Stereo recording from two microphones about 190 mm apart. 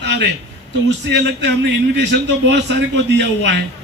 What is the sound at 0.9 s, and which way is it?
A man's voice, 65° right (ahead or behind).